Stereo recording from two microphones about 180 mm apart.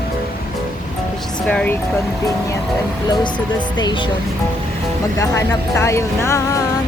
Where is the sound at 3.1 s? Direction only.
25° left (ahead or behind).